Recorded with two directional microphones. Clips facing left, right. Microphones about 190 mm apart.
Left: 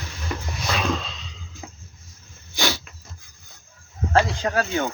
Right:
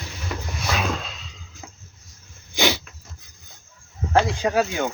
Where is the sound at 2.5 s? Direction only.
15° right (ahead or behind).